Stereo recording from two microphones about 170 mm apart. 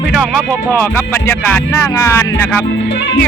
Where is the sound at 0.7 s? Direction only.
15° left (ahead or behind).